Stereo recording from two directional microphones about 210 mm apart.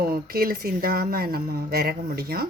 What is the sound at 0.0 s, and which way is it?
Speech, 45° right (ahead or behind).